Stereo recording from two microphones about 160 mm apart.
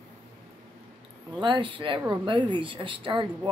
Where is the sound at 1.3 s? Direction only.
30° right (ahead or behind).